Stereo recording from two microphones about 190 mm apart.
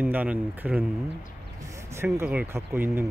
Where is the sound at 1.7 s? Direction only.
15° right (ahead or behind).